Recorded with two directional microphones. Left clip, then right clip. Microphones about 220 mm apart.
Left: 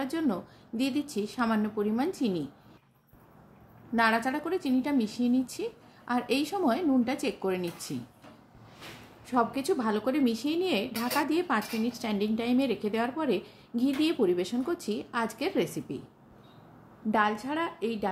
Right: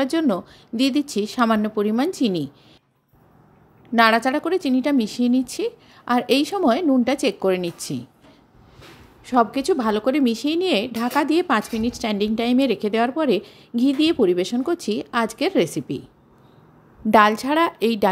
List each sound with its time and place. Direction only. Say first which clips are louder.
0.0 s a woman's voice: right 10 dB; 40° right (ahead or behind)
3.9 s a woman's voice: right 10 dB; 40° right (ahead or behind)
9.2 s a woman's voice: right 9 dB; 35° right (ahead or behind)
17.1 s a woman's voice: right 12 dB; 50° right (ahead or behind)